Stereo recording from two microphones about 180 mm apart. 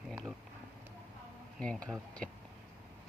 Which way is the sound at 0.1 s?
5° right (ahead or behind).